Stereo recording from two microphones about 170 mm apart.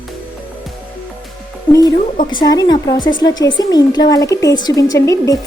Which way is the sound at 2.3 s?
25° left (ahead or behind).